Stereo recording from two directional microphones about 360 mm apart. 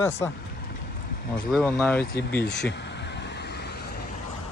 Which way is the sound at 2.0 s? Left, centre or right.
Left.